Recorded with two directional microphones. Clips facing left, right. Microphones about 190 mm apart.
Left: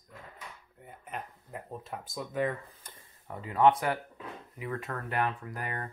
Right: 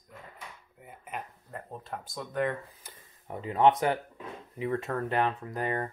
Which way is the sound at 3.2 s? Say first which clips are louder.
Right 1 dB; 20° right (ahead or behind).